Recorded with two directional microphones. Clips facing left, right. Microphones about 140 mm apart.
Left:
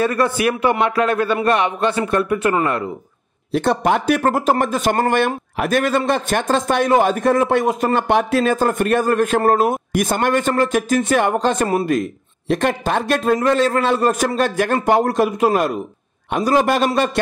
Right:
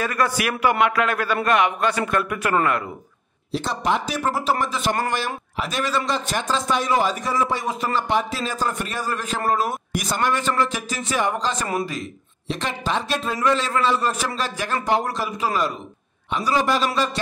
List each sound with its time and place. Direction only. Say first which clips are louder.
0.0 s a man's voice: left 6 dB; 30° left (ahead or behind)
3.5 s a man's voice: left 6 dB; 55° left (ahead or behind)